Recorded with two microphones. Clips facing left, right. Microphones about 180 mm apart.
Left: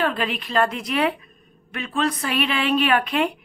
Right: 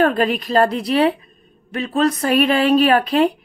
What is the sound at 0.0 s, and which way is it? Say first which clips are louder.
Speech: right 7 dB; 45° right (ahead or behind).